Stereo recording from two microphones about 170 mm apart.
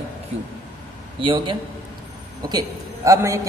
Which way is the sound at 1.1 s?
30° right (ahead or behind).